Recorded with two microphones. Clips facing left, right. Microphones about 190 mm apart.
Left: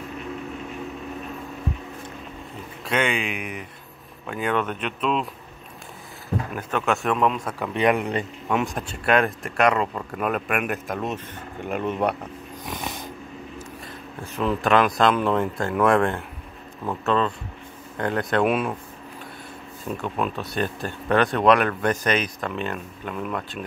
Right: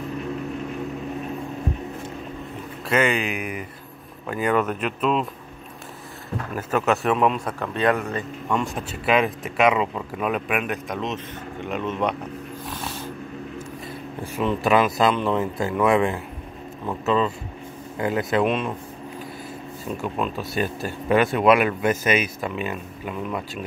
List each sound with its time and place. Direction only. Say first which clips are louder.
2.9 s speech: right 3 dB; centre (ahead or behind)
6.5 s speech: right 4 dB; 5° right (ahead or behind)
7.5 s a man's voice: left 1 dB; 15° left (ahead or behind)
8.5 s a man's voice: right 1 dB; 5° left (ahead or behind)
12.6 s a sound: left 2 dB; 15° left (ahead or behind)
14.2 s speech: right 1 dB; 10° right (ahead or behind)
18.4 s a man's voice: left 3 dB; 5° left (ahead or behind)
20.0 s speech: even; centre (ahead or behind)